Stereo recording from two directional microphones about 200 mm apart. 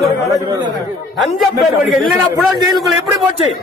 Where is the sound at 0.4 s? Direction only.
20° right (ahead or behind).